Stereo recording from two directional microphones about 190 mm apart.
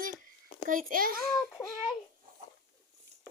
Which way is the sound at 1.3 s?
15° left (ahead or behind).